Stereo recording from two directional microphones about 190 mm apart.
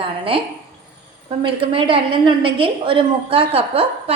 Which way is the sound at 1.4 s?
25° right (ahead or behind).